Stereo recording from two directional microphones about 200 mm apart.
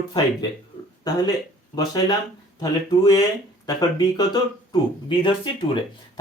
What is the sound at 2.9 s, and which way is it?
Speech, 20° left (ahead or behind).